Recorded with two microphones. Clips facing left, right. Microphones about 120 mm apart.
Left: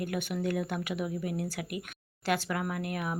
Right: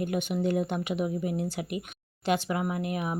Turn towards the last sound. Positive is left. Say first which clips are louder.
# right 3 dB
turn(degrees=-20)  # may be behind; listen again after turning